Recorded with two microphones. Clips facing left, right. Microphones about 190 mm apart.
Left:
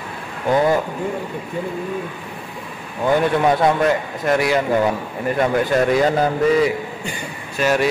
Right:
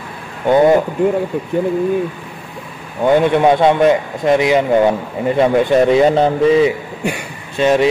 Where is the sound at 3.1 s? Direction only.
20° right (ahead or behind).